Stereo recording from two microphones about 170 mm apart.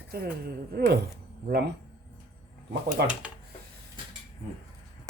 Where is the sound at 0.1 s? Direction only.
65° right (ahead or behind).